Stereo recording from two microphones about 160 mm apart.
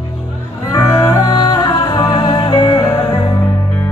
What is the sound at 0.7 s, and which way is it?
Music, 20° left (ahead or behind).